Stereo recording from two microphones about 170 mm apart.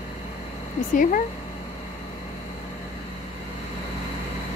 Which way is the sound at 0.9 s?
50° left (ahead or behind).